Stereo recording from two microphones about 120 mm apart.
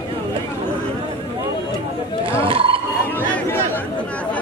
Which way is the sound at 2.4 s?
50° right (ahead or behind).